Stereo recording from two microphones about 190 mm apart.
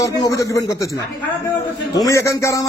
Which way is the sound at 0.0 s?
15° left (ahead or behind).